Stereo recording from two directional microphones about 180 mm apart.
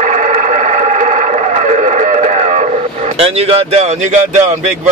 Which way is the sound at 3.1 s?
35° right (ahead or behind).